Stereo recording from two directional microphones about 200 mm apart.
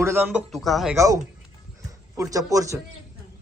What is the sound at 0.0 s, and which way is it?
Speech, 10° right (ahead or behind).